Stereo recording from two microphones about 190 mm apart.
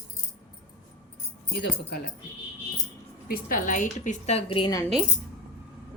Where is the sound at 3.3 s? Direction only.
50° left (ahead or behind); by 4.8 s 25° left (ahead or behind).